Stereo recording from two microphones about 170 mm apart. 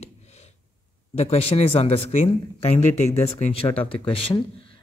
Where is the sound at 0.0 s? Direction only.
40° left (ahead or behind).